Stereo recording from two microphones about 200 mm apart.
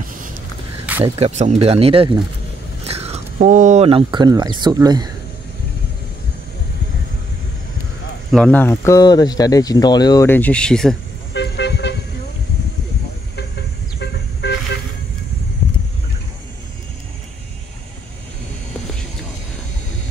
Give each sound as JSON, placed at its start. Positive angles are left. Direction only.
{"t": 1.2, "sound": "speech", "side_deg": -35}
{"t": 8.3, "sound": "speech", "side_deg": 5}
{"t": 11.3, "sound": "toot", "side_deg": 60}
{"t": 13.4, "sound": "vehicle", "side_deg": 55}